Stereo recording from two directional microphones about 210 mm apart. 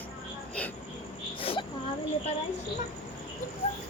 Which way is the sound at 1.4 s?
25° left (ahead or behind).